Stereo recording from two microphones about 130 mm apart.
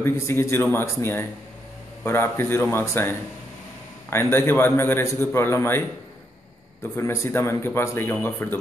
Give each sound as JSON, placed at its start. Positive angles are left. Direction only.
{"t": 0.0, "sound": "a man's voice", "side_deg": 20}